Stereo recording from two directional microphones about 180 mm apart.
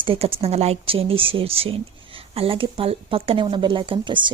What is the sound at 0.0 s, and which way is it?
Speech, 30° right (ahead or behind).